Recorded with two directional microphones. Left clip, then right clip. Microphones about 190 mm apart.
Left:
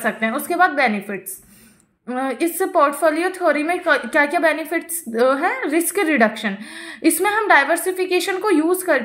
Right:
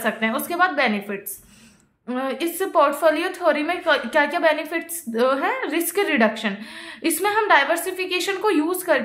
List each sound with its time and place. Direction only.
0.0 s a woman's voice: 15° left (ahead or behind)